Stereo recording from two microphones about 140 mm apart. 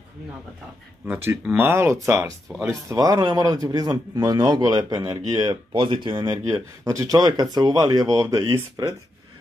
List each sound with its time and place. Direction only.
1.0 s a man's voice: 15° right (ahead or behind)
5.8 s speech: 35° right (ahead or behind)
6.3 s a man's voice: 20° right (ahead or behind)